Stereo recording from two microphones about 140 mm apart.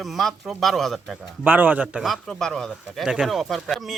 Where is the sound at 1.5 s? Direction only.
15° right (ahead or behind).